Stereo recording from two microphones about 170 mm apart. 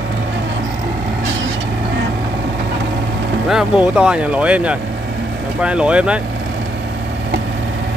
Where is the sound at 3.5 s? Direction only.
5° right (ahead or behind).